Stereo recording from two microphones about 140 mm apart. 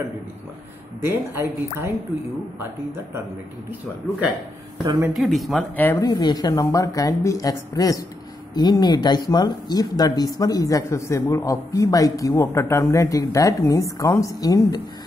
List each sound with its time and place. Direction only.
1.0 s speech: 15° right (ahead or behind)
5.1 s speech: centre (ahead or behind)
5.8 s speech: 15° left (ahead or behind)
6.0 s speech: 30° left (ahead or behind)